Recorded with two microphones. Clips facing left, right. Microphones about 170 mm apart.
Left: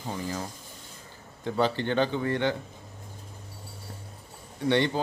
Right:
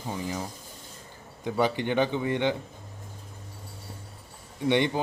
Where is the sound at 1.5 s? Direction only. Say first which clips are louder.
Even; 15° right (ahead or behind).